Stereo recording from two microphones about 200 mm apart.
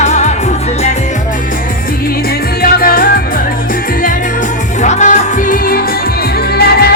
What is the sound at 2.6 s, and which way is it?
Music, 45° left (ahead or behind).